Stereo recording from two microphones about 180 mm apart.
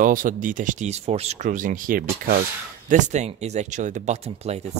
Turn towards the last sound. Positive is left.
turn(degrees=-35)  # may be behind; listen again after turning